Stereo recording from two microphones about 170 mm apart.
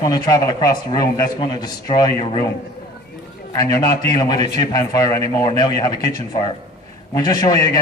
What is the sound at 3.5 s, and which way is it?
A man's voice, 25° left (ahead or behind).